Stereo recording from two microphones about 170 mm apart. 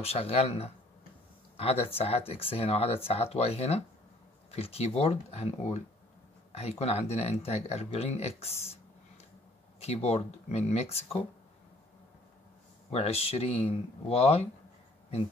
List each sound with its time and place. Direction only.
0.0 s speech: 35° left (ahead or behind)
9.8 s speech: 40° left (ahead or behind)
12.9 s speech: 35° left (ahead or behind)